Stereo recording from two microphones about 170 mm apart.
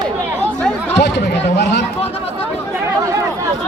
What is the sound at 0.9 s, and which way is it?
Speech, 85° left.